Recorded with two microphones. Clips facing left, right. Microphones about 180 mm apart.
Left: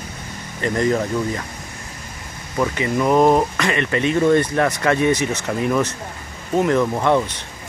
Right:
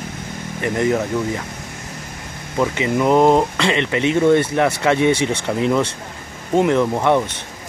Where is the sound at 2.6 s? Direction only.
20° right (ahead or behind).